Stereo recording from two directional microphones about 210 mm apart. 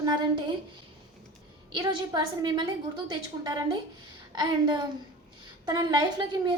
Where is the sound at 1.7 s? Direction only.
20° right (ahead or behind).